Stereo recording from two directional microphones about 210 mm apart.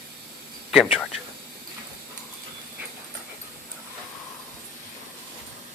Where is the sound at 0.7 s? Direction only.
Centre (ahead or behind).